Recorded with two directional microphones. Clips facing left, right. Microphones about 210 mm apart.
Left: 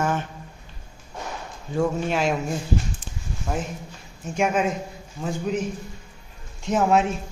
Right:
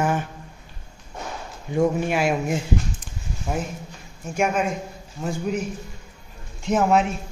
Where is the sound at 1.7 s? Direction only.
15° right (ahead or behind).